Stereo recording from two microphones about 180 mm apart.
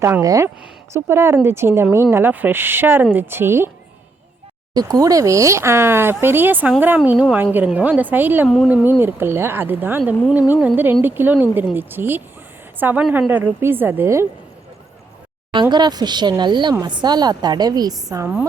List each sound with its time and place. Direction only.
0.0 s speech: 15° right (ahead or behind)
4.7 s speech: 20° right (ahead or behind)
15.7 s a woman's voice: 25° right (ahead or behind)